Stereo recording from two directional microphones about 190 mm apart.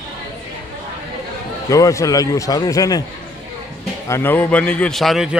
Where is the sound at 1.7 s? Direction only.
15° left (ahead or behind).